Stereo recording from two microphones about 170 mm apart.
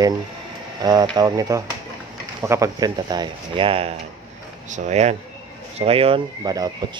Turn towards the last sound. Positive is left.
turn(degrees=-20)  # may be behind; listen again after turning